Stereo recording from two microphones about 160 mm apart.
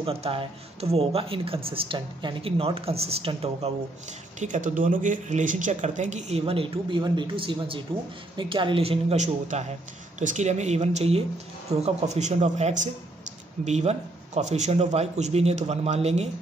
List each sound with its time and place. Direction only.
0.0 s speech: 35° right (ahead or behind)
4.4 s speech: 50° right (ahead or behind)